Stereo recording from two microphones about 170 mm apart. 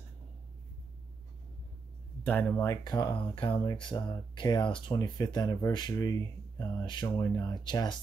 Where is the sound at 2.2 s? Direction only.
10° left (ahead or behind).